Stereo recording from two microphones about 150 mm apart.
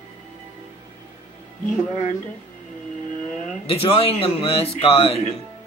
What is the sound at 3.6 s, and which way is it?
Speech, 40° left (ahead or behind).